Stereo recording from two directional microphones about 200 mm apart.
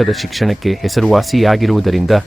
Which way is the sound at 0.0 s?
Centre (ahead or behind).